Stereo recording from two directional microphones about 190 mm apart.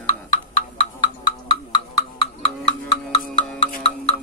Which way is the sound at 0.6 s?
30° left (ahead or behind).